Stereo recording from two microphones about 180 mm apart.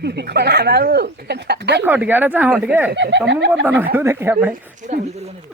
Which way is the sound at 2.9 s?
75° right (ahead or behind).